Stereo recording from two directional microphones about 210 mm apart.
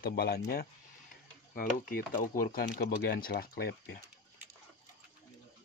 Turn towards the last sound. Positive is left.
turn(degrees=50)  # may be behind; listen again after turning